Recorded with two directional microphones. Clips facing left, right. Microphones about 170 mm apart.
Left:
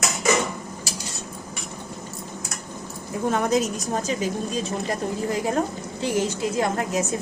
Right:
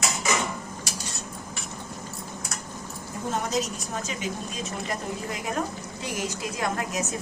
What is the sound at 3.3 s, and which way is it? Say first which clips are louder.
Speech: left 6 dB; 55° left (ahead or behind).